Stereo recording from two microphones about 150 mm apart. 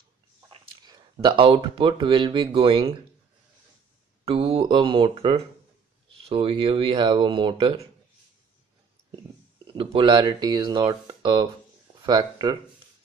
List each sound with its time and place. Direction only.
1.2 s speech: 35° right (ahead or behind)
4.2 s speech: 40° right (ahead or behind)
9.7 s speech: 35° right (ahead or behind)